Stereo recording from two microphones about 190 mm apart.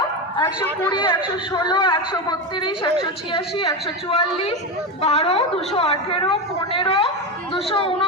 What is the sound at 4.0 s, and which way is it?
A woman's voice, 30° left (ahead or behind).